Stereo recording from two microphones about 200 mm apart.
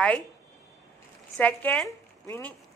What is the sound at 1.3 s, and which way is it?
Speech, 5° left (ahead or behind).